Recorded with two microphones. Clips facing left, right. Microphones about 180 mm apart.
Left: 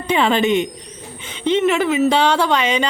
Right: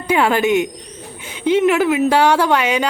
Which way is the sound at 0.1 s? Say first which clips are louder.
Right 1 dB; 5° right (ahead or behind).